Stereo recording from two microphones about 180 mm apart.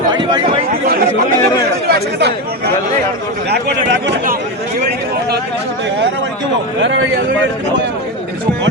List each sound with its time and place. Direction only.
0.1 s speech: 25° right (ahead or behind)
1.9 s speech: 65° right (ahead or behind)
3.5 s a man's voice: 80° right
6.8 s speech: 75° right (ahead or behind)